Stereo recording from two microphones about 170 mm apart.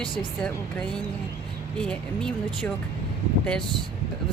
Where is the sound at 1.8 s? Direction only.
5° left (ahead or behind).